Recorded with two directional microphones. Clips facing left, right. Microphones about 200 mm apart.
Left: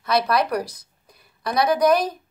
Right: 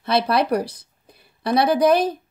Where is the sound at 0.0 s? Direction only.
30° right (ahead or behind).